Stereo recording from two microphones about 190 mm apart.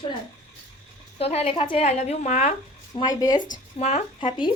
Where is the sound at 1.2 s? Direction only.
30° left (ahead or behind).